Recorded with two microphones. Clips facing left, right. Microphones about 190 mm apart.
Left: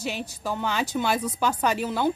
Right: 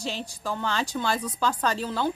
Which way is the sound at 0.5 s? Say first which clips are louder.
Left 1 dB; 15° left (ahead or behind).